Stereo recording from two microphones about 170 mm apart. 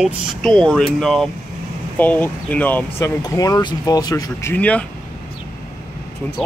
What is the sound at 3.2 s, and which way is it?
Speech, 20° left (ahead or behind).